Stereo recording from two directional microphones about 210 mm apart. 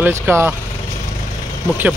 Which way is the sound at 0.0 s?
10° right (ahead or behind).